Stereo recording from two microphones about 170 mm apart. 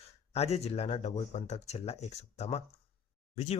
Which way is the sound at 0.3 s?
40° left (ahead or behind).